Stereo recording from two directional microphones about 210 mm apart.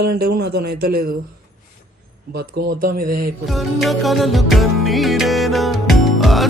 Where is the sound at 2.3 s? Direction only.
50° right (ahead or behind).